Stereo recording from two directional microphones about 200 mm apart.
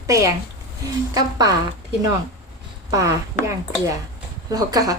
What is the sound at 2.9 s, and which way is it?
A woman's voice, 15° right (ahead or behind).